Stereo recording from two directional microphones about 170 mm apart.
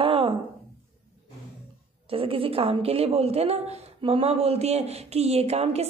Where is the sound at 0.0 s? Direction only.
30° right (ahead or behind).